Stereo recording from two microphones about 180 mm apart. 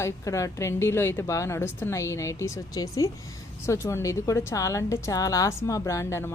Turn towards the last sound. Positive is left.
turn(degrees=15)  # may be behind; listen again after turning